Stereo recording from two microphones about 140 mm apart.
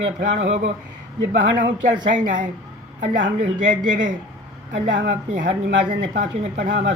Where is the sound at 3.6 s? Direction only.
65° right (ahead or behind).